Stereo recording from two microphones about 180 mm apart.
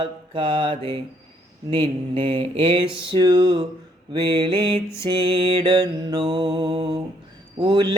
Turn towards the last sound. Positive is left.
turn(degrees=-25)  # may be behind; listen again after turning